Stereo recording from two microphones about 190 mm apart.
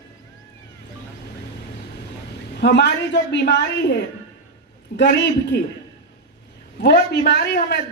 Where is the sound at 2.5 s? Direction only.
65° left (ahead or behind).